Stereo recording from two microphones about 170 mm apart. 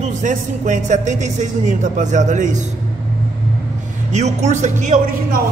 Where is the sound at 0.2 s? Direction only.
45° right (ahead or behind).